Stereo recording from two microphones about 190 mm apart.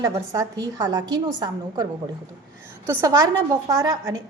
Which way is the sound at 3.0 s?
15° right (ahead or behind).